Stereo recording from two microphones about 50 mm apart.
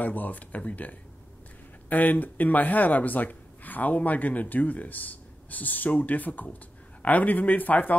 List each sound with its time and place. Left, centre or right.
0.0 s speech: left